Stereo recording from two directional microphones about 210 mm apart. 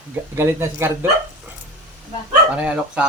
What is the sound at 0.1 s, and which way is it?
Speech, 10° right (ahead or behind).